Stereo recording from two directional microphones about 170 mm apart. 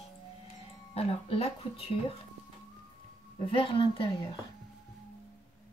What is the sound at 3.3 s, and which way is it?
Speech, 30° left (ahead or behind).